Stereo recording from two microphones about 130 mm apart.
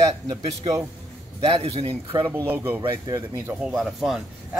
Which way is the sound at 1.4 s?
45° right (ahead or behind).